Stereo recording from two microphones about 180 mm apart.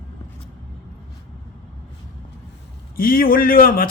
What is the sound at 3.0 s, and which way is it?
Speech, 55° left (ahead or behind).